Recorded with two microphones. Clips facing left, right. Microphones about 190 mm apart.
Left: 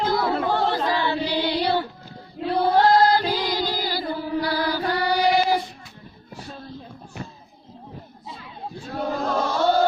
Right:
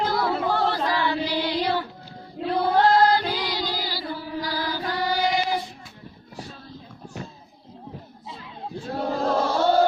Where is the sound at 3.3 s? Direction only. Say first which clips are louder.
Left 3 dB; 50° left (ahead or behind); by 5.1 s 65° left (ahead or behind).